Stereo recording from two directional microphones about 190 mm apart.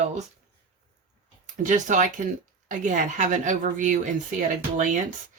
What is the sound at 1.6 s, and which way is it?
Speech, 40° right (ahead or behind).